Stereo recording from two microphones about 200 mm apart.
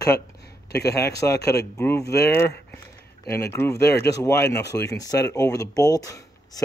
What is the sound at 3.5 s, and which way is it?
Speech, 10° left (ahead or behind).